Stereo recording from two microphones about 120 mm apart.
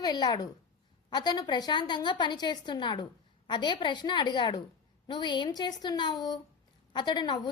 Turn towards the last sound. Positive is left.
turn(degrees=40)  # may be behind; listen again after turning